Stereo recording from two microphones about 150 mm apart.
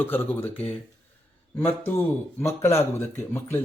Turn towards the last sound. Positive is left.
turn(degrees=15)  # may be behind; listen again after turning